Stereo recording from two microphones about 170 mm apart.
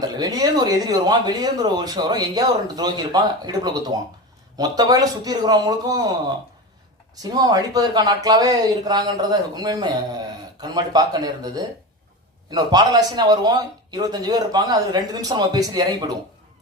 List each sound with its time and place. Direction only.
0.0 s speech: 20° right (ahead or behind)
7.2 s speech: 20° right (ahead or behind)